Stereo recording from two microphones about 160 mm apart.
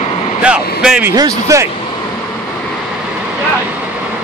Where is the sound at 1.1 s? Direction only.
20° right (ahead or behind).